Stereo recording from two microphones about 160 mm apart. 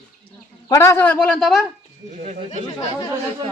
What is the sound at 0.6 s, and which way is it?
A man's voice, 20° left (ahead or behind).